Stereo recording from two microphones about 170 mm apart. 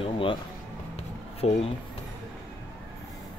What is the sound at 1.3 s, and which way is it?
Speech, 35° left (ahead or behind).